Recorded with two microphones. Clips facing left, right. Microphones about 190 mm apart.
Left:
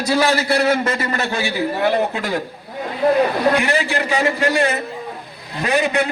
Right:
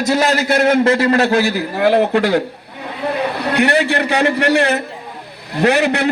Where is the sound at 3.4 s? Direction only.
65° right (ahead or behind).